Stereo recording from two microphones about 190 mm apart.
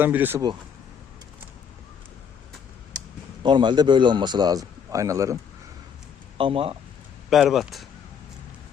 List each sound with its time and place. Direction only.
0.0 s speech: 10° right (ahead or behind)
3.4 s a man's voice: 25° right (ahead or behind)
6.3 s speech: 30° right (ahead or behind)
7.3 s speech: centre (ahead or behind)